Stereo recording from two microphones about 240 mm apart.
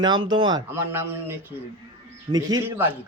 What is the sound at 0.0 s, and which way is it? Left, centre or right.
A man's voice, centre.